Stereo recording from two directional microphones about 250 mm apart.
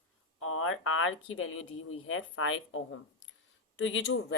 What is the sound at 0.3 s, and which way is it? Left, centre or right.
Speech, left.